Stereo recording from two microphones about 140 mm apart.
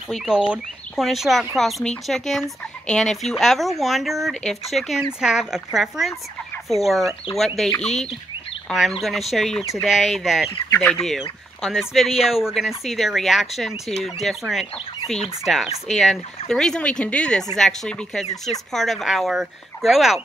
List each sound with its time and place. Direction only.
0.1 s speech: 5° right (ahead or behind)
10.7 s speech: 15° left (ahead or behind)
11.1 s speech: centre (ahead or behind)